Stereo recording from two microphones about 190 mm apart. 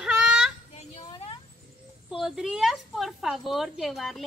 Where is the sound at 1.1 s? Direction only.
30° left (ahead or behind).